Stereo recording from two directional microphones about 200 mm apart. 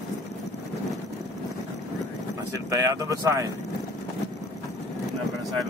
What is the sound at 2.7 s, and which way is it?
Speech, 15° right (ahead or behind).